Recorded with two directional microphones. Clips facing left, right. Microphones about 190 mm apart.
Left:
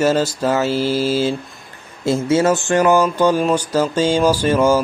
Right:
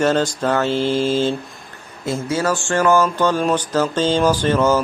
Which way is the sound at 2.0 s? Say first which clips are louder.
Left 5 dB; 25° left (ahead or behind).